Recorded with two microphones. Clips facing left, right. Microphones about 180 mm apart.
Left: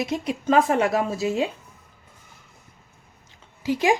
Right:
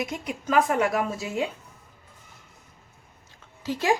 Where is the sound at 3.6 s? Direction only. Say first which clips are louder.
Left 3 dB; 15° left (ahead or behind).